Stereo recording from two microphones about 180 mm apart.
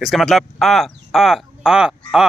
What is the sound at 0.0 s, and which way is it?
A man's voice, centre (ahead or behind).